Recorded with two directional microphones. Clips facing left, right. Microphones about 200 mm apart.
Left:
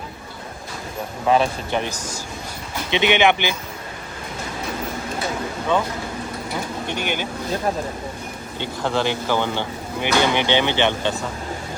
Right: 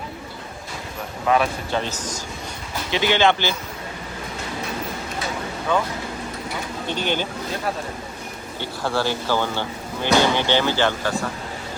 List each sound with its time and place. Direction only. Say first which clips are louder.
1.3 s a man's voice: left 2 dB; 30° left (ahead or behind)
1.7 s speech: left 1 dB; 15° left (ahead or behind)
2.9 s speech: left 1 dB; 20° left (ahead or behind)
6.8 s speech: right 4 dB; 15° left (ahead or behind)
8.5 s speech: left 1 dB; 20° left (ahead or behind)